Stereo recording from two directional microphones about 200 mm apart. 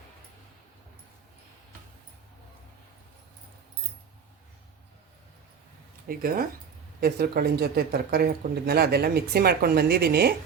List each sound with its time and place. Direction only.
6.1 s speech: 45° right (ahead or behind)